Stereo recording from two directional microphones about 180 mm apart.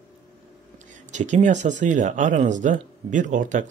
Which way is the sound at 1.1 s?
40° right (ahead or behind).